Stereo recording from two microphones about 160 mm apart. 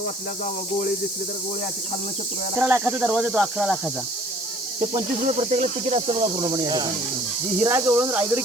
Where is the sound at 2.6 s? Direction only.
10° right (ahead or behind).